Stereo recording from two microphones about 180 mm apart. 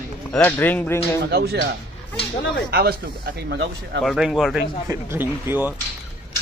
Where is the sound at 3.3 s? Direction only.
75° right (ahead or behind).